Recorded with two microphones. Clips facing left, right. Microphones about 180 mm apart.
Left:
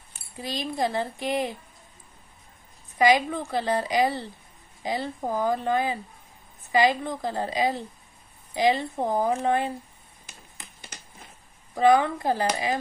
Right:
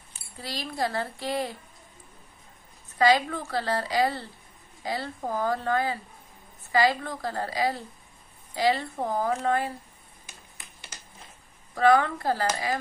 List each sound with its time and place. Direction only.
0.4 s speech: 20° left (ahead or behind)
3.0 s a woman's voice: 15° left (ahead or behind)
11.7 s speech: 20° left (ahead or behind)